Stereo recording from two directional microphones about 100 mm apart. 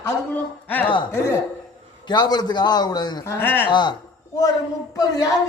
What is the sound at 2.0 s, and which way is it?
Speech, 45° left (ahead or behind).